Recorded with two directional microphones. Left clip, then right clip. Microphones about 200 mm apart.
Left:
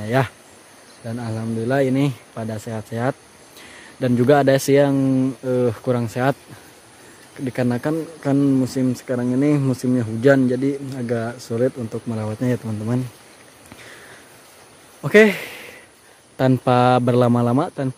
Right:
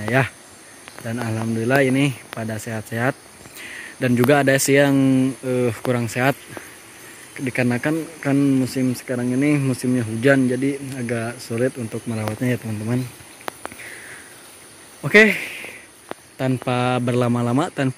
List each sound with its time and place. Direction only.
0.1 s speech: 5° left (ahead or behind)
1.0 s speech: 5° right (ahead or behind); by 4.9 s 10° left (ahead or behind)
4.9 s speech: centre (ahead or behind)
7.3 s speech: 5° left (ahead or behind)
15.0 s speech: centre (ahead or behind)
15.2 s a sound: 20° left (ahead or behind)
16.3 s speech: 25° left (ahead or behind)
17.6 s speech: centre (ahead or behind)